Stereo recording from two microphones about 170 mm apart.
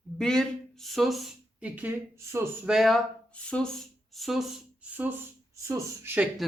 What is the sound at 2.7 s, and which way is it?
Speech, centre (ahead or behind).